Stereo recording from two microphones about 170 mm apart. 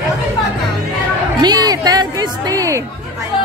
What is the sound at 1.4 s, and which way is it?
Music, 25° right (ahead or behind).